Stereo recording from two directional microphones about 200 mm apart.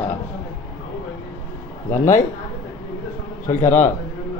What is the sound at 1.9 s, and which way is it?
Speech, 40° left (ahead or behind).